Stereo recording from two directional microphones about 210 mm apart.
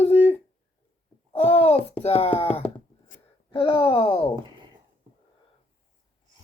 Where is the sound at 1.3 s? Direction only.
30° left (ahead or behind).